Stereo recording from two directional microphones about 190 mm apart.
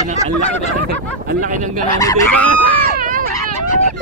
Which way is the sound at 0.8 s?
45° right (ahead or behind).